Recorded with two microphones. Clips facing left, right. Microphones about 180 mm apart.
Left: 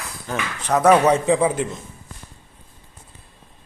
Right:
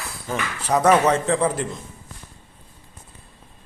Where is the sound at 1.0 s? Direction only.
10° left (ahead or behind).